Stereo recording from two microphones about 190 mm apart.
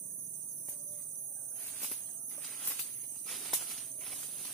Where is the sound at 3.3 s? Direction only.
Centre (ahead or behind).